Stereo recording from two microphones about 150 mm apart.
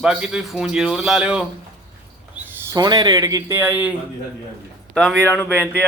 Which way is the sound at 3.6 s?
10° right (ahead or behind).